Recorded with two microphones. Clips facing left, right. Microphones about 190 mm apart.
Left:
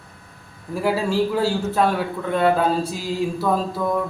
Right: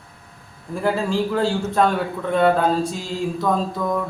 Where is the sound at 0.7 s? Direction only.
5° left (ahead or behind).